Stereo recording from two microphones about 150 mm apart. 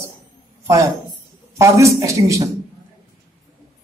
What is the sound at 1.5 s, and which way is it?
Speech, 20° right (ahead or behind).